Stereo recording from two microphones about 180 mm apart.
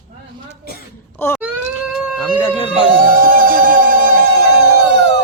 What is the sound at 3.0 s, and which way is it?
Music, 50° right (ahead or behind).